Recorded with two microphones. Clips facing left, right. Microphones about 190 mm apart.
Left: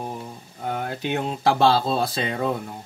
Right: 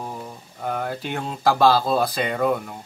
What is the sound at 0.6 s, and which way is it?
Speech, 20° left (ahead or behind).